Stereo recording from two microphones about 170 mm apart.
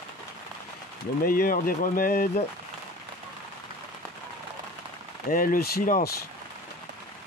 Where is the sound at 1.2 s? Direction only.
55° left (ahead or behind).